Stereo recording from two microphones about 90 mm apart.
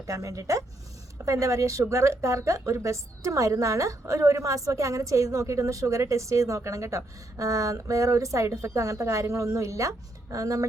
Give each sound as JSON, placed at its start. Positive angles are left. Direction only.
{"t": 0.1, "sound": "a woman's voice", "side_deg": -40}